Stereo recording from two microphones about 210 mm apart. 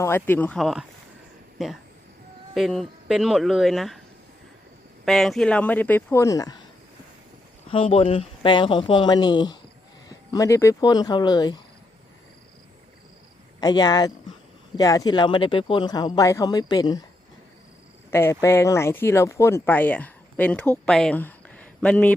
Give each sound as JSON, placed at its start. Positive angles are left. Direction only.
{"t": 0.0, "sound": "speech", "side_deg": 10}
{"t": 5.0, "sound": "speech", "side_deg": 0}
{"t": 7.7, "sound": "speech", "side_deg": 25}
{"t": 13.6, "sound": "speech", "side_deg": 20}
{"t": 18.1, "sound": "speech", "side_deg": 10}